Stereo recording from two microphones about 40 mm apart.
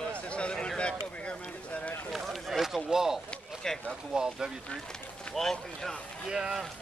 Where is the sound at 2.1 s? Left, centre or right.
Centre.